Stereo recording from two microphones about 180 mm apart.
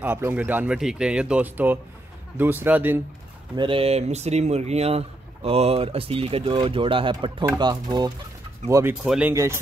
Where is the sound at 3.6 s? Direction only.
30° right (ahead or behind).